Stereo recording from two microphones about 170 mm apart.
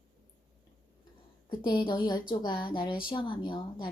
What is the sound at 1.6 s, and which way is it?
Speech, 30° left (ahead or behind).